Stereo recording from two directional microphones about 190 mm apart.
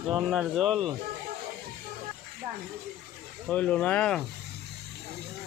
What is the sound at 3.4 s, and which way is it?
Speech, 5° left (ahead or behind).